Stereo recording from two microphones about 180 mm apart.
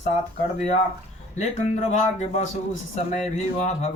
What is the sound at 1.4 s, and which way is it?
Speech, 40° left (ahead or behind).